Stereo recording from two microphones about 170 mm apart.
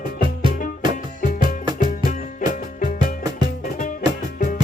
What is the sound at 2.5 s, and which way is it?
Music, 50° left (ahead or behind).